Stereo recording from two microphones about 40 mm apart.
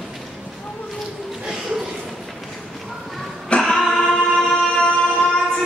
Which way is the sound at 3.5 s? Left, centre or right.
Left.